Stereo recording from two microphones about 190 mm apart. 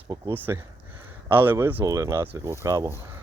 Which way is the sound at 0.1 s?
10° right (ahead or behind).